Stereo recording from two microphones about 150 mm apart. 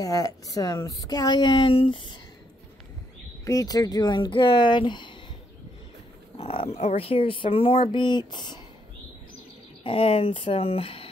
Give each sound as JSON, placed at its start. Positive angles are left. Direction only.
{"t": 0.0, "sound": "a woman's voice", "side_deg": 25}
{"t": 3.4, "sound": "speech", "side_deg": 25}
{"t": 6.3, "sound": "speech", "side_deg": 40}
{"t": 9.8, "sound": "speech", "side_deg": 40}